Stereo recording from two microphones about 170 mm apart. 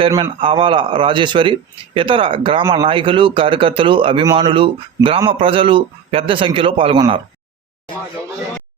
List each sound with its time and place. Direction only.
0.1 s a man's voice: 30° right (ahead or behind)